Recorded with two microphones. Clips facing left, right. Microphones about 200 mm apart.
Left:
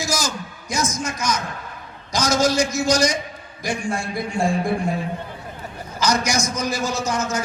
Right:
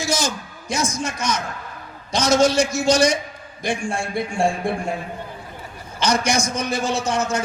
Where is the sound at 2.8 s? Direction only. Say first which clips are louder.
Right 2 dB; 30° right (ahead or behind).